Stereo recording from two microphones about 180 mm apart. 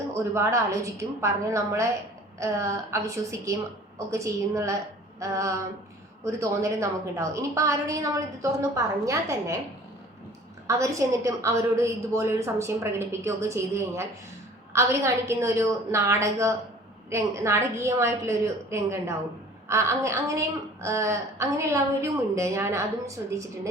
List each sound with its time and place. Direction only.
0.1 s a woman's voice: 15° right (ahead or behind)
10.7 s a woman's voice: 15° right (ahead or behind)